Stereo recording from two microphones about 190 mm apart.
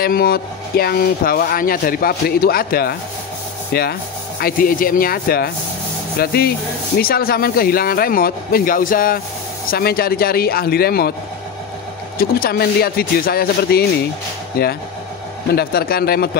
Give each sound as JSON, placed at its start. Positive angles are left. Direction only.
{"t": 0.0, "sound": "speech", "side_deg": 50}
{"t": 12.2, "sound": "speech", "side_deg": 50}